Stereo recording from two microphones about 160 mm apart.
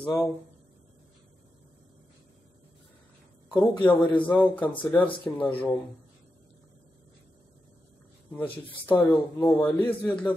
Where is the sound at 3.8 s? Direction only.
10° left (ahead or behind).